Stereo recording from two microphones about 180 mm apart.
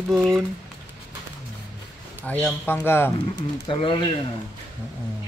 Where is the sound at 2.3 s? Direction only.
5° left (ahead or behind).